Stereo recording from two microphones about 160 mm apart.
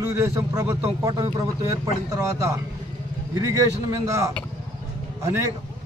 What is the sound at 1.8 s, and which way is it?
A man's voice, 20° right (ahead or behind).